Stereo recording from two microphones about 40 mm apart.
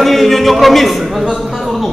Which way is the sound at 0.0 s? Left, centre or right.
Centre.